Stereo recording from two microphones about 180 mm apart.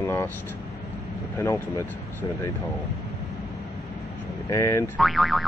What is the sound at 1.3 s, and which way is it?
Speech, 15° left (ahead or behind).